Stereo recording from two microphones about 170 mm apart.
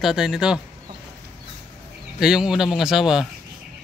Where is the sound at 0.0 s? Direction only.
5° right (ahead or behind).